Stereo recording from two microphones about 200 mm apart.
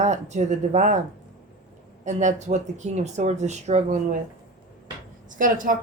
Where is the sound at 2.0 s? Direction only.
35° right (ahead or behind).